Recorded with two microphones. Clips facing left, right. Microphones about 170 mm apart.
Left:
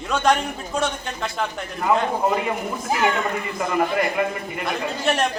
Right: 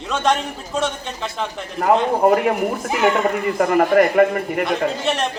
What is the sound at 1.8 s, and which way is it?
Speech, 60° right (ahead or behind).